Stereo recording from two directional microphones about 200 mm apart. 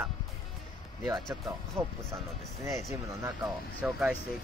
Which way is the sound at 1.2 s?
Centre (ahead or behind).